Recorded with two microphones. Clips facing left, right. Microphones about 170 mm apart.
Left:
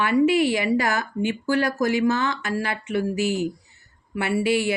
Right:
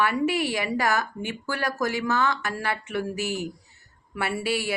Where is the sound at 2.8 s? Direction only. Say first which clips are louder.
Left 5 dB; 15° left (ahead or behind).